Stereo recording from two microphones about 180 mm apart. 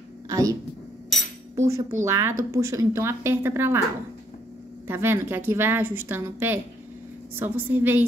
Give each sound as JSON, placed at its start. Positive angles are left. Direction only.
{"t": 0.3, "sound": "speech", "side_deg": -20}
{"t": 1.7, "sound": "a woman's voice", "side_deg": -15}
{"t": 4.8, "sound": "a woman's voice", "side_deg": -10}